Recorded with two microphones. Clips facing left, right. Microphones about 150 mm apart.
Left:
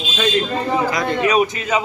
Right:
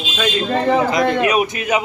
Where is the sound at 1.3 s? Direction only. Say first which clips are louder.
Even; 15° right (ahead or behind).